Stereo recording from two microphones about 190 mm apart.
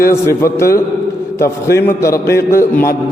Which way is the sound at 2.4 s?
15° left (ahead or behind).